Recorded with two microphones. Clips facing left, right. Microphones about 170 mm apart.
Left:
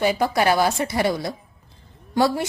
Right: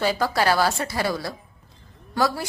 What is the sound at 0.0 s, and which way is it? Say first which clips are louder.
A woman's voice: left 2 dB; 20° left (ahead or behind).